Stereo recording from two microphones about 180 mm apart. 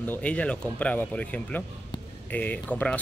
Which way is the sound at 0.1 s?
5° left (ahead or behind).